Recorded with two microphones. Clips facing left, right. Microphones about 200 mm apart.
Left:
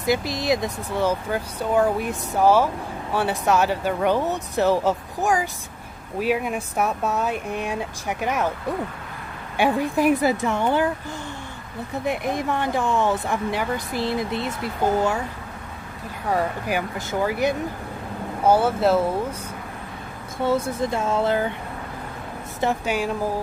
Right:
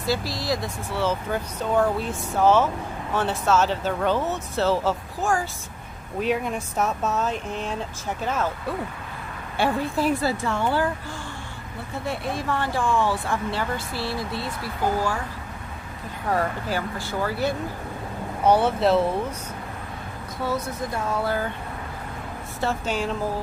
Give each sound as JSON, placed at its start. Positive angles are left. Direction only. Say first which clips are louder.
{"t": 0.0, "sound": "speech", "louder": "left 4 dB", "side_deg": 20}
{"t": 6.1, "sound": "speech", "louder": "left 2 dB", "side_deg": 5}
{"t": 11.9, "sound": "speech", "louder": "left 4 dB", "side_deg": 15}
{"t": 16.3, "sound": "speech", "louder": "left 1 dB", "side_deg": 15}
{"t": 18.5, "sound": "speech", "louder": "left 1 dB", "side_deg": 5}
{"t": 20.4, "sound": "speech", "louder": "left 6 dB", "side_deg": 25}
{"t": 22.6, "sound": "speech", "louder": "left 3 dB", "side_deg": 15}